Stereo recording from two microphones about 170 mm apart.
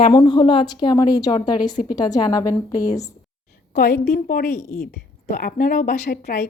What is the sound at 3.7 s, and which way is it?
A woman's voice, 65° left (ahead or behind).